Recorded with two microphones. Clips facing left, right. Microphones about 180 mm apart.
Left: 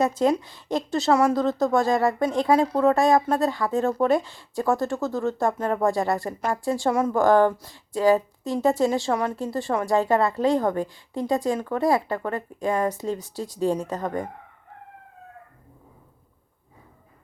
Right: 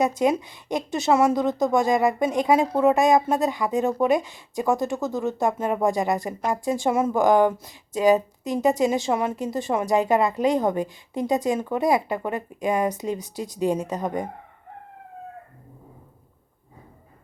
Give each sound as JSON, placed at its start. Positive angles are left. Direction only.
{"t": 0.0, "sound": "speech", "side_deg": -15}